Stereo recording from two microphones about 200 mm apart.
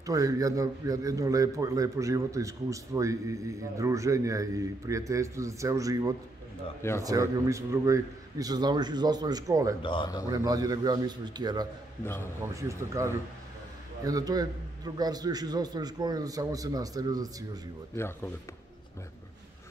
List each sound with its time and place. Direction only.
0.0 s a man's voice: 15° right (ahead or behind)
9.8 s speech: 25° left (ahead or behind)
10.2 s a man's voice: 20° right (ahead or behind)
12.0 s speech: 10° left (ahead or behind)
12.4 s a man's voice: 15° right (ahead or behind)
17.9 s speech: 10° left (ahead or behind)